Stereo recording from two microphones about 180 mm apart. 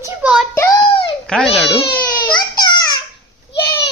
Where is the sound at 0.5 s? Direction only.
15° left (ahead or behind).